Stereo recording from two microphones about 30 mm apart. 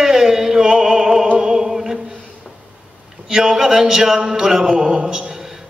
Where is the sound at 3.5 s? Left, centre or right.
Centre.